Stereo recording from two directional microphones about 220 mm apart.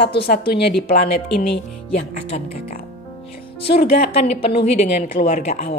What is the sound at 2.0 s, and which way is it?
Speech, 30° left (ahead or behind).